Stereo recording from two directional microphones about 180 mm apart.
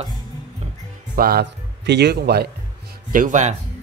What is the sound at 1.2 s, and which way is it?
Speech, 60° right (ahead or behind).